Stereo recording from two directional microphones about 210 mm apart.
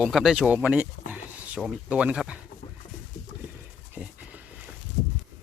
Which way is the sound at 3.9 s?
5° right (ahead or behind).